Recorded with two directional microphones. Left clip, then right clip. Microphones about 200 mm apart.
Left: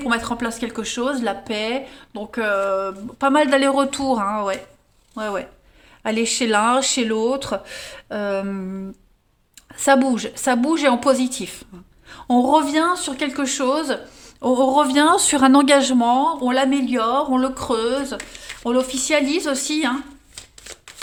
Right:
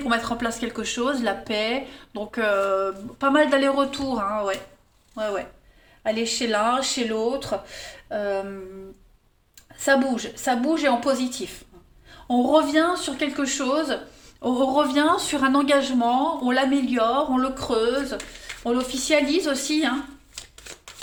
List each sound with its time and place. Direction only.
0.0 s speech: 30° left (ahead or behind)
9.7 s speech: 45° left (ahead or behind)